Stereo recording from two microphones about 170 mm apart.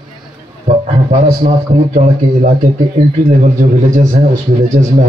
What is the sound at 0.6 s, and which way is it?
A man's voice, 40° right (ahead or behind).